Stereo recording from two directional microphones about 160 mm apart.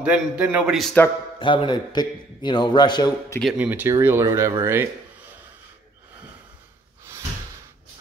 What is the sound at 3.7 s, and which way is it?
Speech, 15° right (ahead or behind).